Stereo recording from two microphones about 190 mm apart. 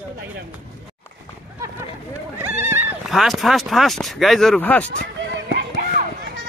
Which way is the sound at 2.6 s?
10° right (ahead or behind).